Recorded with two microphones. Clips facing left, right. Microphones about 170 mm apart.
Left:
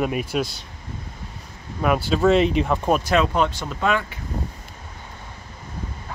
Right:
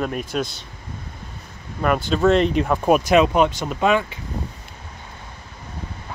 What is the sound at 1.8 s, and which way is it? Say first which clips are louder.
Speech: right 1 dB; 5° left (ahead or behind).